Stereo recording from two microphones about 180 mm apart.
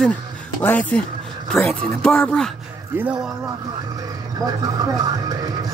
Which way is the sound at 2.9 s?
10° right (ahead or behind).